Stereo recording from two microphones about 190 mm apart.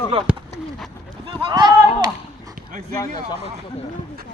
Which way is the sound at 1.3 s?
25° right (ahead or behind).